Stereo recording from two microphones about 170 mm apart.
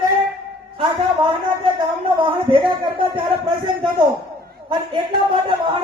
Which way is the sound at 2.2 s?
30° right (ahead or behind).